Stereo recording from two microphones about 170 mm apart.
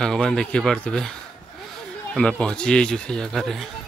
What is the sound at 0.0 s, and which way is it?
Speech, 5° left (ahead or behind).